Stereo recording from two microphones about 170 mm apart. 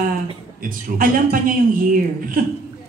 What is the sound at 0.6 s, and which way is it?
Speech, 55° right (ahead or behind).